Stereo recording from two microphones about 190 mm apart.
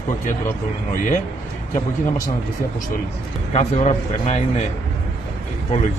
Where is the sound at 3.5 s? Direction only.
35° left (ahead or behind).